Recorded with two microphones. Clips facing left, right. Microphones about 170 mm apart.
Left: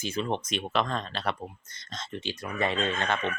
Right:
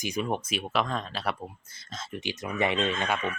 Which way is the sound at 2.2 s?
15° right (ahead or behind).